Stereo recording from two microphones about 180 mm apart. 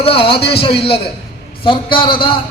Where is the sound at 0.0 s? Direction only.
30° left (ahead or behind).